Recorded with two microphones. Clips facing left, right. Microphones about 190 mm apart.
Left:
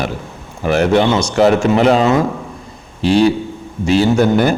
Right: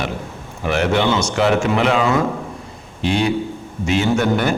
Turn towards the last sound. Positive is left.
turn(degrees=35)  # may be behind; listen again after turning